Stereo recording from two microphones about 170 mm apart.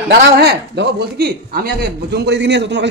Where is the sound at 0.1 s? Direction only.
85° right.